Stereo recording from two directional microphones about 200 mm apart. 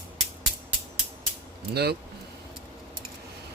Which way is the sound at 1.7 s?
55° right (ahead or behind).